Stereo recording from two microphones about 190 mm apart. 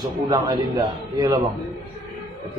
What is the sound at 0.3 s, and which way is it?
A man's voice, 20° right (ahead or behind).